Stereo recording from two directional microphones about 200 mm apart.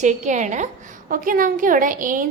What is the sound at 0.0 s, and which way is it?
A woman's voice, 35° right (ahead or behind).